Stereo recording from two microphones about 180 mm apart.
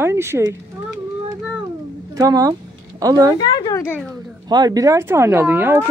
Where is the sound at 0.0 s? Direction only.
15° right (ahead or behind).